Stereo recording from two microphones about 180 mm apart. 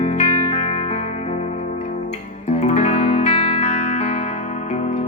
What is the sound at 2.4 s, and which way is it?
Music, 35° left (ahead or behind).